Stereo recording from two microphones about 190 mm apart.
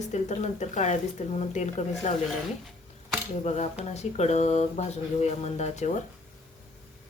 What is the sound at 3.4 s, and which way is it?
Speech, 35° left (ahead or behind).